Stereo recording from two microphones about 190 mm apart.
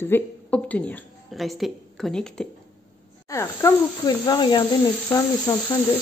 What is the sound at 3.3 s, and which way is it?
Speech, 15° left (ahead or behind).